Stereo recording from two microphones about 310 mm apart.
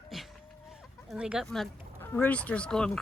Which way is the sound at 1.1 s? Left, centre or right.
Centre.